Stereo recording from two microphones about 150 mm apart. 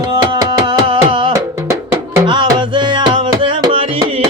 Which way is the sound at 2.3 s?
30° right (ahead or behind).